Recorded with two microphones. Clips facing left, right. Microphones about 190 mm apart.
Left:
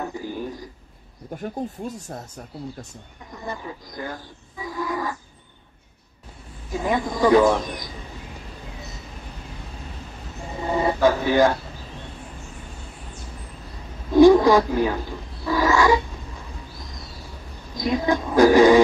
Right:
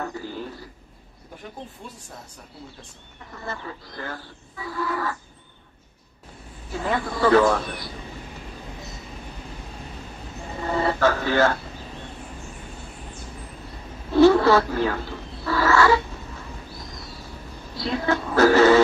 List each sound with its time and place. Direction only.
0.0 s a sound: 15° left (ahead or behind)
1.4 s speech: 40° left (ahead or behind)
3.3 s speech: 15° left (ahead or behind)
6.7 s a man's voice: 15° left (ahead or behind)
10.6 s a sound: 15° left (ahead or behind)
14.1 s wild animals: 15° left (ahead or behind)
17.7 s a man's voice: 15° left (ahead or behind)